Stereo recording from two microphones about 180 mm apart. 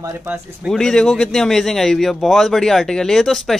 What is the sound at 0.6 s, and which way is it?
A man's voice, 5° left (ahead or behind).